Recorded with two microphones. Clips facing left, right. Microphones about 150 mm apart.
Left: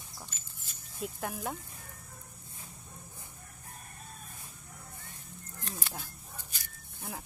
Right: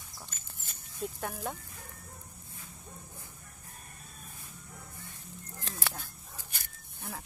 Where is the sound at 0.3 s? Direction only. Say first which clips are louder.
Right 2 dB; 55° right (ahead or behind).